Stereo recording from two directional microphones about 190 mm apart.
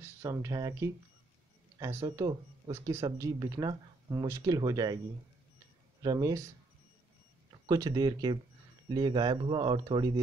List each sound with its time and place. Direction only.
0.2 s speech: 15° right (ahead or behind)
6.0 s speech: 20° right (ahead or behind)
7.6 s speech: 20° right (ahead or behind)